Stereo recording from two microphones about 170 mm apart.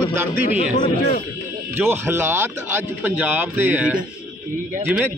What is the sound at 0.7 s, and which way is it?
Speech, 45° left (ahead or behind).